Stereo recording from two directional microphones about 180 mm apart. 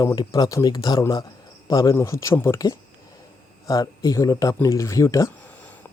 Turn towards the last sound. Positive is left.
turn(degrees=15)  # may be behind; listen again after turning